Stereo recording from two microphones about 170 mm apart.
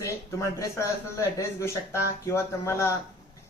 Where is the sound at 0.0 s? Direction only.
15° left (ahead or behind).